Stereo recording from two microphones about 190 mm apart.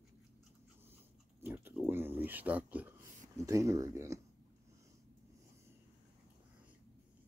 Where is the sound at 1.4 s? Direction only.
10° right (ahead or behind).